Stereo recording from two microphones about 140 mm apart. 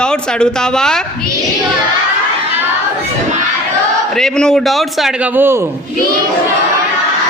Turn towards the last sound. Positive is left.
turn(degrees=-15)  # may be behind; listen again after turning